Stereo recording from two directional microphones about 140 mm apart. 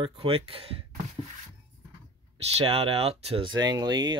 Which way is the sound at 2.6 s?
40° right (ahead or behind).